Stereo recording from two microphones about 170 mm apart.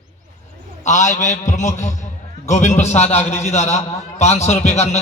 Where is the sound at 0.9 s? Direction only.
45° left (ahead or behind).